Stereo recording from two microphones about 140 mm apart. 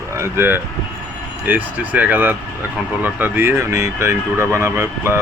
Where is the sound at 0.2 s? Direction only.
15° right (ahead or behind).